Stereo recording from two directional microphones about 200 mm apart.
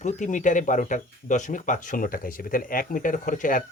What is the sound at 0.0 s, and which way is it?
Speech, 40° left (ahead or behind).